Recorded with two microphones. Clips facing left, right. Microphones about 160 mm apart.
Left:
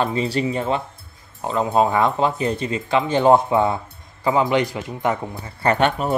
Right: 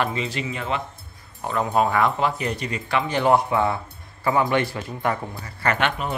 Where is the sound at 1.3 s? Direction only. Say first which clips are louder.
Left 3 dB; 20° left (ahead or behind).